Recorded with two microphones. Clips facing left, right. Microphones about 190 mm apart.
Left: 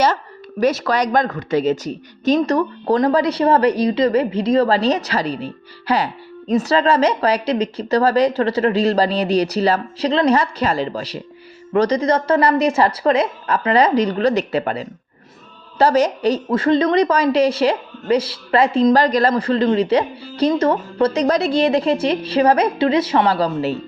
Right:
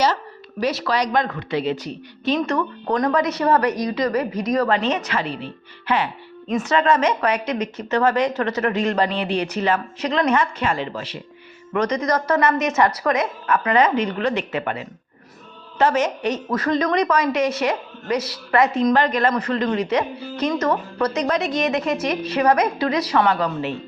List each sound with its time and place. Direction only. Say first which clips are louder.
0.6 s a woman's voice: left 4 dB; 45° left (ahead or behind)